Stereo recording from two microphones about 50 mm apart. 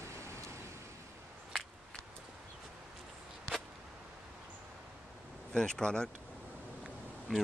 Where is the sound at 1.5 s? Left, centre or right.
Centre.